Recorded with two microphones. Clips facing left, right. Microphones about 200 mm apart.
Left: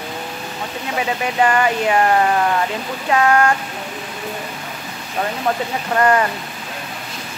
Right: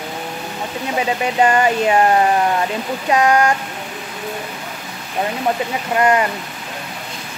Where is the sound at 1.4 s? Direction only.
25° right (ahead or behind).